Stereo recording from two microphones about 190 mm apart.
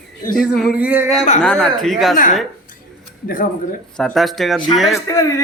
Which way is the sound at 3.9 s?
Centre (ahead or behind).